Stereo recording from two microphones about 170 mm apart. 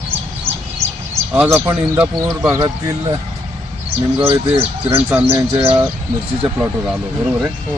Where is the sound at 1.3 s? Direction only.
15° right (ahead or behind).